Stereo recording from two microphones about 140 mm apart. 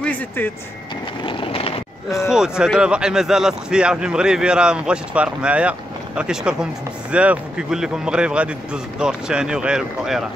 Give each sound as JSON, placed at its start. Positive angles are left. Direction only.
{"t": 1.2, "sound": "vehicle", "side_deg": 40}
{"t": 2.2, "sound": "speech", "side_deg": -5}